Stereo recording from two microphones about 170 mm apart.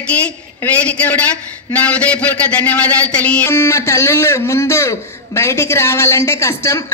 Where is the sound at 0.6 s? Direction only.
10° left (ahead or behind).